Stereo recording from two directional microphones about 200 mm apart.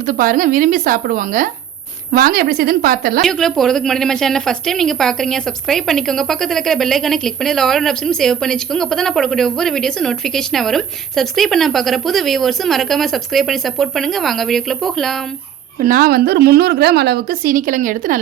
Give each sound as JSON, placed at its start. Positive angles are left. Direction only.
{"t": 0.0, "sound": "a woman's voice", "side_deg": -45}
{"t": 3.2, "sound": "a woman's voice", "side_deg": 0}
{"t": 15.8, "sound": "a woman's voice", "side_deg": -45}